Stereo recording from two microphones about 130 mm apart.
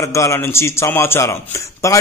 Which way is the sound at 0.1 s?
25° left (ahead or behind).